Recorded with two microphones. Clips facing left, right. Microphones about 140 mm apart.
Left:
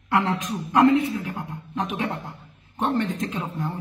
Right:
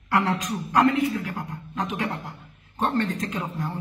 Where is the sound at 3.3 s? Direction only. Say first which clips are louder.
Left 1 dB; 25° left (ahead or behind).